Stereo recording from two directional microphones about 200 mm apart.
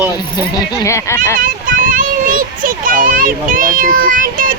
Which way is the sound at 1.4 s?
45° right (ahead or behind).